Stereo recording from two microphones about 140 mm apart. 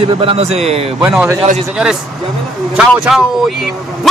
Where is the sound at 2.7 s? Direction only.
5° right (ahead or behind).